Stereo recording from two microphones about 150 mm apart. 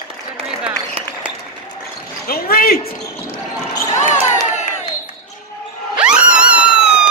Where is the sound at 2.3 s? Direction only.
75° left (ahead or behind).